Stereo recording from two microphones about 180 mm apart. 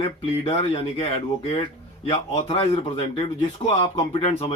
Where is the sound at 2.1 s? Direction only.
35° left (ahead or behind).